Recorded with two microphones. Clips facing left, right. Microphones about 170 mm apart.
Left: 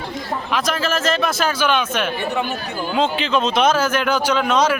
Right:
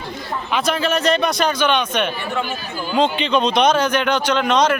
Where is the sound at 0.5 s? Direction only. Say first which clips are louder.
Right 2 dB; centre (ahead or behind).